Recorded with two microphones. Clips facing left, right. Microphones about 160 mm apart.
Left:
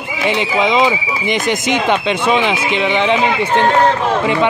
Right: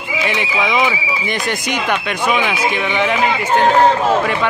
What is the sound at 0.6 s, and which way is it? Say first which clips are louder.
Speech: left 3 dB; 25° left (ahead or behind).